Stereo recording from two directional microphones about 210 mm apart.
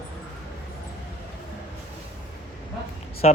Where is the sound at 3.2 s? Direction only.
35° left (ahead or behind).